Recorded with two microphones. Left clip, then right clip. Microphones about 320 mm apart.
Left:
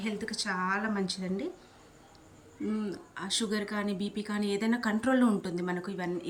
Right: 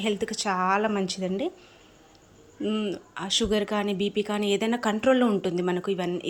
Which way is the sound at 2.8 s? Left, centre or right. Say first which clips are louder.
Right 6 dB; centre.